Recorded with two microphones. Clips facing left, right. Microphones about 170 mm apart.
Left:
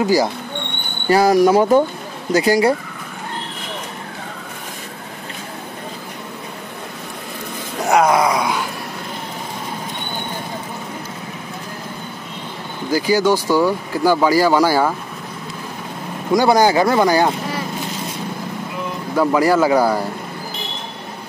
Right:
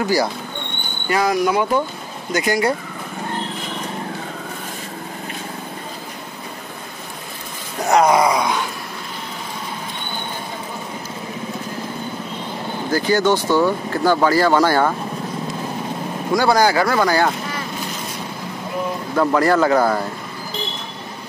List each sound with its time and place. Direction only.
0.0 s speech: 20° left (ahead or behind)
1.0 s speech: 35° left (ahead or behind)
7.9 s groan: centre (ahead or behind)
12.9 s speech: 10° left (ahead or behind)
16.3 s speech: 20° left (ahead or behind)
19.1 s speech: 10° left (ahead or behind)